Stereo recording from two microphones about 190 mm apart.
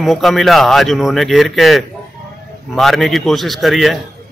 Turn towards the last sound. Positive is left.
turn(degrees=0)  # may be behind; listen again after turning